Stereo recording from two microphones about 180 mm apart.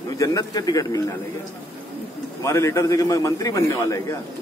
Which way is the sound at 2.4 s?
15° left (ahead or behind).